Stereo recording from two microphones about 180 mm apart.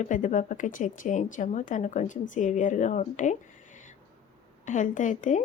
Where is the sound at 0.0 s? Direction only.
45° left (ahead or behind).